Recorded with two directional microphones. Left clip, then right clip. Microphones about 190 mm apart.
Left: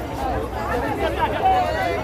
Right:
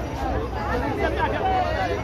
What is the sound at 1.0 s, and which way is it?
Speech, 55° left (ahead or behind).